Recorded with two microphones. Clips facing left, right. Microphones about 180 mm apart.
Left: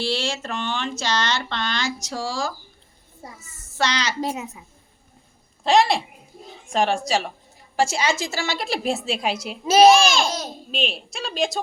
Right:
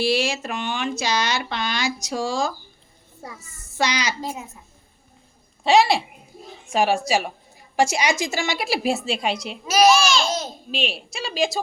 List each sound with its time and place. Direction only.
0.0 s speech: 10° right (ahead or behind)
3.8 s speech: 10° right (ahead or behind)
4.2 s a child's voice: 70° left (ahead or behind)
5.6 s a woman's voice: centre (ahead or behind)
8.6 s a woman's voice: 5° right (ahead or behind)
9.6 s a child's voice: 30° left (ahead or behind)
9.9 s babbling: 55° left (ahead or behind)
10.7 s a woman's voice: centre (ahead or behind)